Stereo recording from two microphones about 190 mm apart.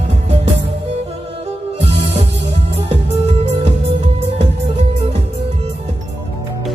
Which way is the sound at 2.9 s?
35° right (ahead or behind).